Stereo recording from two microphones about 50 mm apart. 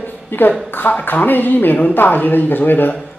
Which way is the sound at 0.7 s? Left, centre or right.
Left.